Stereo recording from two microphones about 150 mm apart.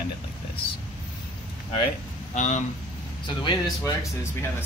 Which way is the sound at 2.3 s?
55° left (ahead or behind).